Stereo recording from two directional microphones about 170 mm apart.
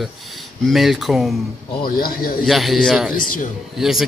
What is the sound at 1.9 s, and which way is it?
Speech, 60° left (ahead or behind).